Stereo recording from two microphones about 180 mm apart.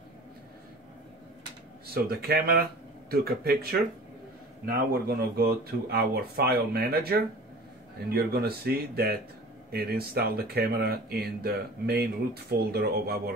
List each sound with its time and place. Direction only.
2.0 s speech: 60° right (ahead or behind)
4.6 s speech: 55° right (ahead or behind)